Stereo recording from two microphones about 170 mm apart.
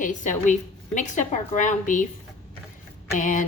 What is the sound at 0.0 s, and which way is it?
A woman's voice, 50° left (ahead or behind).